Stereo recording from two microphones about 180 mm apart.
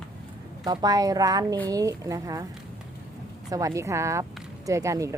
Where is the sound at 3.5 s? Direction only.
20° right (ahead or behind).